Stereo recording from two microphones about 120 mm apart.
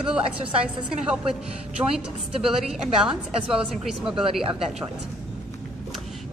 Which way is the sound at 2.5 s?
5° right (ahead or behind).